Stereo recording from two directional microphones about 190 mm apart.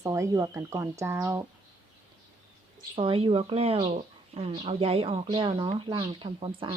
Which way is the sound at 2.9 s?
30° right (ahead or behind).